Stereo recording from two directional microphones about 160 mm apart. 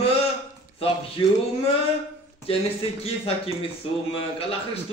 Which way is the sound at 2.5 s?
35° left (ahead or behind).